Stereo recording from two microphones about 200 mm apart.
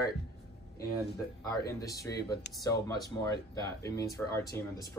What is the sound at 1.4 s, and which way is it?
Speech, 15° left (ahead or behind).